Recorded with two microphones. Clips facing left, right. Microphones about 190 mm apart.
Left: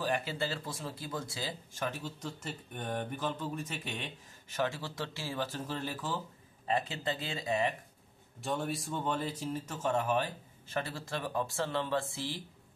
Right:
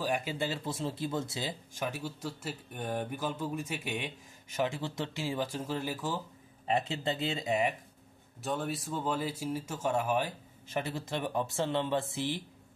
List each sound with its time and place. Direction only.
0.0 s speech: 15° right (ahead or behind)
6.7 s speech: 25° right (ahead or behind)
8.4 s speech: centre (ahead or behind); by 12.4 s 20° right (ahead or behind)